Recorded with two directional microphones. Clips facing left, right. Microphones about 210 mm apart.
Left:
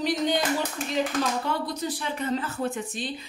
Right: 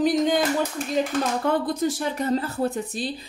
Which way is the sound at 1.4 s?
50° right (ahead or behind).